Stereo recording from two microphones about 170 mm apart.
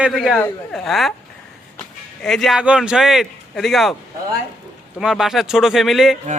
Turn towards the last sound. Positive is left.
turn(degrees=0)  # may be behind; listen again after turning